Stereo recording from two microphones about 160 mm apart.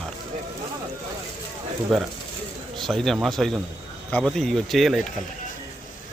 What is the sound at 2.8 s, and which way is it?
Speech, centre (ahead or behind).